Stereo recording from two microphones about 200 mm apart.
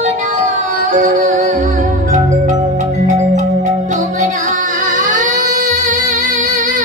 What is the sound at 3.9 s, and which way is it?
Music, 35° right (ahead or behind).